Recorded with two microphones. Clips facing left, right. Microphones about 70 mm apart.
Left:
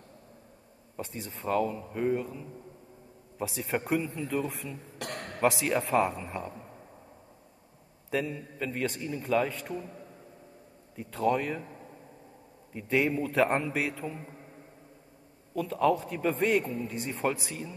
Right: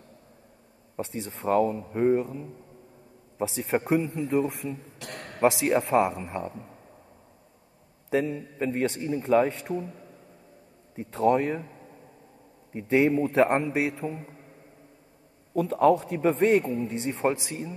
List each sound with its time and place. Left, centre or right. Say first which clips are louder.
0.9 s a man's voice: right 5 dB; right
4.9 s a sound: left 2 dB; left
5.4 s a man's voice: right 4 dB; right
8.1 s a man's voice: right 5 dB; right
11.0 s a man's voice: right 5 dB; right
12.7 s a man's voice: right 5 dB; right
15.5 s a man's voice: right 5 dB; right